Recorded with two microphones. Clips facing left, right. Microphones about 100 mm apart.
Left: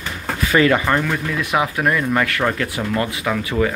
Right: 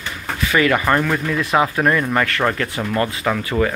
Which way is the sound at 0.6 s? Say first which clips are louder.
Left 2 dB; 25° left (ahead or behind).